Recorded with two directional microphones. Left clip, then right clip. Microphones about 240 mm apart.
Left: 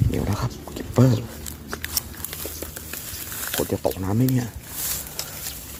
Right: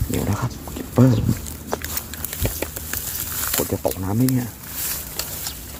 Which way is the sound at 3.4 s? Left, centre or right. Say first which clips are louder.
Right 2 dB; centre.